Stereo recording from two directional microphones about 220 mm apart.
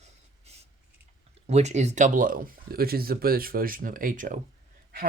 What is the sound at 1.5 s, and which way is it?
Speech, 30° right (ahead or behind).